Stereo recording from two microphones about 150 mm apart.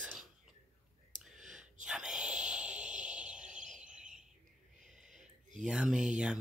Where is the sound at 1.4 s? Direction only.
55° right (ahead or behind).